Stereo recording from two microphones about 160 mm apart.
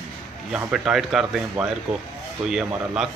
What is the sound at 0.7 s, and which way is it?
Speech, 5° right (ahead or behind).